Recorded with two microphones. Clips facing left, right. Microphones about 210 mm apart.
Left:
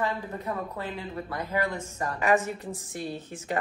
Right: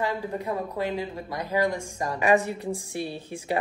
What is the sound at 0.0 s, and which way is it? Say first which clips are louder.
Speech: right 2 dB; 15° right (ahead or behind).